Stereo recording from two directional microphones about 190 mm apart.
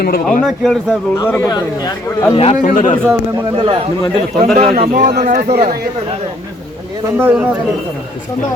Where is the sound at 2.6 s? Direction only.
45° left (ahead or behind).